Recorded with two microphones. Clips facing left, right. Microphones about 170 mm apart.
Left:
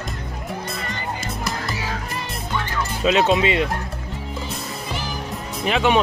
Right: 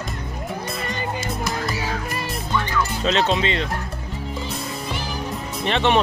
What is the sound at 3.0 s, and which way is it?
Speech, 10° left (ahead or behind).